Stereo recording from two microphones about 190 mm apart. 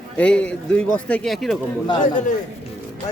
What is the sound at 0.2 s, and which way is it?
A man's voice, 5° left (ahead or behind).